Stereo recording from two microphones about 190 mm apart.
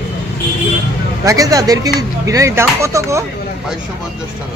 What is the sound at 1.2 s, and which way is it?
Speech, 20° right (ahead or behind).